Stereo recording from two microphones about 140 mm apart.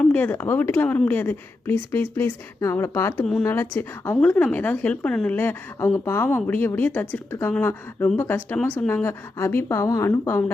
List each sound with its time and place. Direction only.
0.0 s a woman's voice: 10° left (ahead or behind)